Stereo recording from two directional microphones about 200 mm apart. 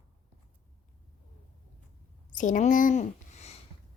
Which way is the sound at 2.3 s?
40° left (ahead or behind).